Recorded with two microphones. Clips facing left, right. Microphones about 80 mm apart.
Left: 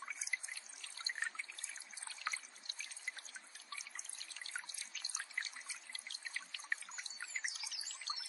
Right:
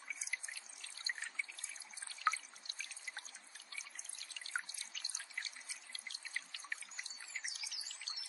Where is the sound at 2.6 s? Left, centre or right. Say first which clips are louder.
Left 1 dB; left.